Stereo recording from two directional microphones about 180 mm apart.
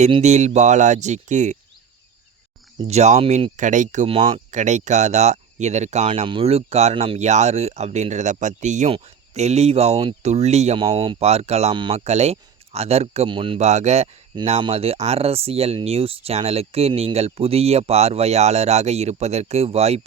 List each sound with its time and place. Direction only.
0.0 s speech: 40° right (ahead or behind)
2.9 s speech: 40° right (ahead or behind)
4.5 s speech: 40° right (ahead or behind)